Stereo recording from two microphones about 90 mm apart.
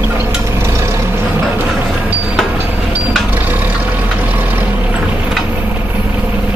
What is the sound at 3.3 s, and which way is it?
Vehicle, 20° right (ahead or behind).